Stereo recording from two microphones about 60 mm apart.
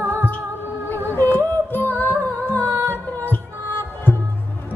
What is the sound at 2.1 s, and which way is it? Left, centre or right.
Music, right.